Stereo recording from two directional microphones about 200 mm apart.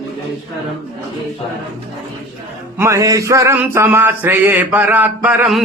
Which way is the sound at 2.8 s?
15° right (ahead or behind).